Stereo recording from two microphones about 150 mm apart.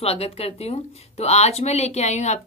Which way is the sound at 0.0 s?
40° left (ahead or behind).